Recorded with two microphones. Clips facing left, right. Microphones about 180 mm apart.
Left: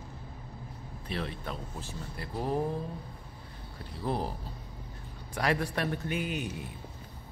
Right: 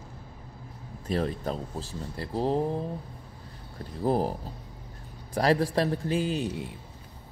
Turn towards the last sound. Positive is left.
turn(degrees=-30)  # may be behind; listen again after turning